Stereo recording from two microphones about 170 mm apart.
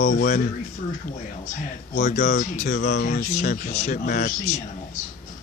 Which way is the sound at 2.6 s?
80° left.